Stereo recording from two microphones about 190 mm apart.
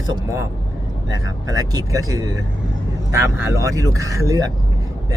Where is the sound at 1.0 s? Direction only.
20° right (ahead or behind).